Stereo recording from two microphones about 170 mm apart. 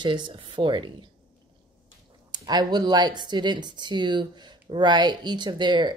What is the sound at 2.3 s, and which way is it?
Speech, 25° right (ahead or behind).